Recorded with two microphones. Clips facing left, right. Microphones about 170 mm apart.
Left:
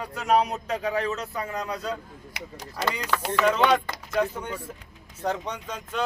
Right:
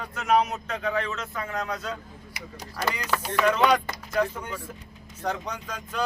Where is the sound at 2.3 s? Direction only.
90° left.